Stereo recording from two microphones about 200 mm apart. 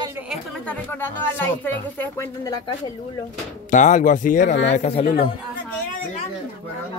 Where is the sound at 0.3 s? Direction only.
5° right (ahead or behind).